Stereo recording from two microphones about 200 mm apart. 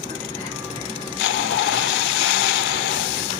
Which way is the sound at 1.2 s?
90° left.